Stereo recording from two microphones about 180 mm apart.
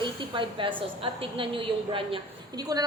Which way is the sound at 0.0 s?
30° right (ahead or behind).